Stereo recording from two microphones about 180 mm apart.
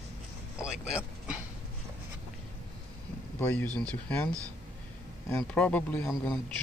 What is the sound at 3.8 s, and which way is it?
Speech, 5° left (ahead or behind).